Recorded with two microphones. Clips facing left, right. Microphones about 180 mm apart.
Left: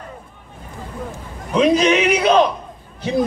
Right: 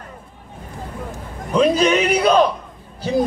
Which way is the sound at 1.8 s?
35° right (ahead or behind).